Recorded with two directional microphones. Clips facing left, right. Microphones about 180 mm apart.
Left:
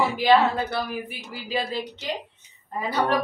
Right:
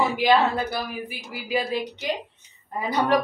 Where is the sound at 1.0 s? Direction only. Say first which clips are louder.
Right 1 dB; 10° right (ahead or behind).